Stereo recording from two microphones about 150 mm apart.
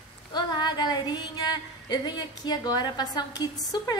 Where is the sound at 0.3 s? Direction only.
30° left (ahead or behind).